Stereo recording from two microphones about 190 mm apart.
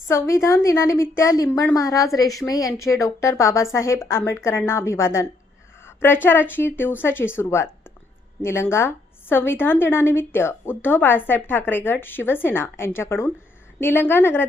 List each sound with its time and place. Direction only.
0.1 s a woman's voice: 15° left (ahead or behind)
8.7 s a woman's voice: 15° left (ahead or behind)